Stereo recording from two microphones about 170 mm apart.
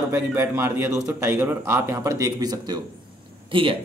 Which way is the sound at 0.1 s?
15° right (ahead or behind).